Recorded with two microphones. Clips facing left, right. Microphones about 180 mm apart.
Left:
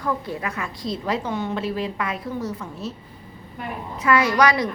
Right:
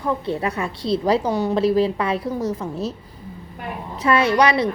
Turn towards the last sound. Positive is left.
turn(degrees=-25)  # may be behind; listen again after turning